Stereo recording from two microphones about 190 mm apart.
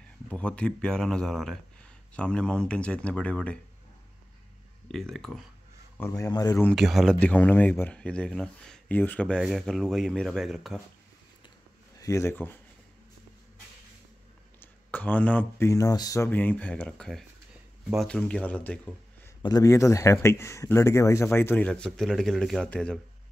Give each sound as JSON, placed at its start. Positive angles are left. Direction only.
{"t": 0.3, "sound": "speech", "side_deg": 5}
{"t": 4.8, "sound": "speech", "side_deg": 0}
{"t": 5.9, "sound": "speech", "side_deg": 15}
{"t": 6.7, "sound": "speech", "side_deg": 0}
{"t": 12.0, "sound": "speech", "side_deg": 15}
{"t": 14.6, "sound": "speech", "side_deg": 10}
{"t": 19.4, "sound": "speech", "side_deg": 20}